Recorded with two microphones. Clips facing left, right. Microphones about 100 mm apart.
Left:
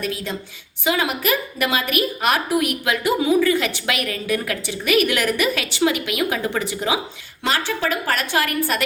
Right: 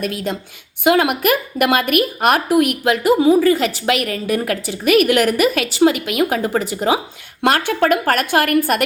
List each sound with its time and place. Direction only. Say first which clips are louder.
0.0 s a woman's voice: right 4 dB; 55° right (ahead or behind)
7.4 s a woman's voice: right 7 dB; 60° right (ahead or behind)